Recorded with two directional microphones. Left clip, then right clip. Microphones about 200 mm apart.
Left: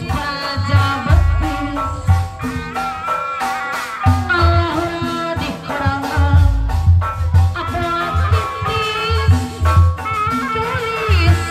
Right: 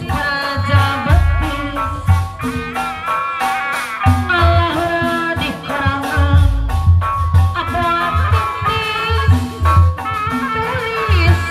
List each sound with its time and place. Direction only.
0.1 s music: 20° right (ahead or behind)
7.5 s music: 25° right (ahead or behind); by 11.3 s 5° right (ahead or behind)